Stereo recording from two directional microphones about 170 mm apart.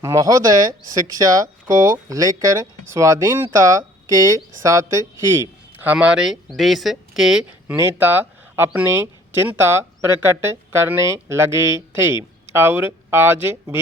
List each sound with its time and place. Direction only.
0.0 s speech: 20° right (ahead or behind)